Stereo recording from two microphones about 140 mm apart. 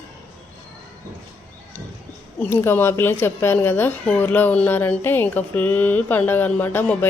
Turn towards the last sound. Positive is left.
turn(degrees=15)  # may be behind; listen again after turning